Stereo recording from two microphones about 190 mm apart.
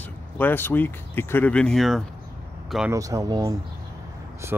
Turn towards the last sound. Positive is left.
turn(degrees=-20)  # may be behind; listen again after turning